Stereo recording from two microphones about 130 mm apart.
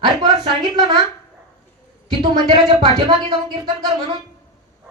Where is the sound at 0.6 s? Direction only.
35° right (ahead or behind).